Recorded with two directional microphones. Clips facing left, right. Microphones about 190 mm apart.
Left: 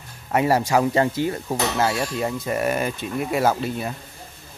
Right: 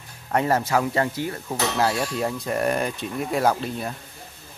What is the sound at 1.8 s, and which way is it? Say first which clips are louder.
Speech: right 2 dB; centre (ahead or behind).